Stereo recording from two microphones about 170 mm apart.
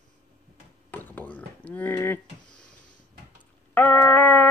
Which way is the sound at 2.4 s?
55° left (ahead or behind).